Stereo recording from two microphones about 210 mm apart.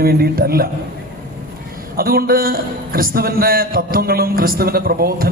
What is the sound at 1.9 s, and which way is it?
A man's voice, 45° right (ahead or behind).